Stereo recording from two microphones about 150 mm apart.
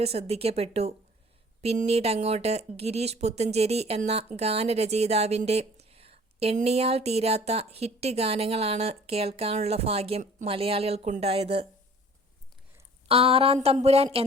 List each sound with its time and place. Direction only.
0.0 s a woman's voice: 45° right (ahead or behind)
13.1 s speech: 40° right (ahead or behind)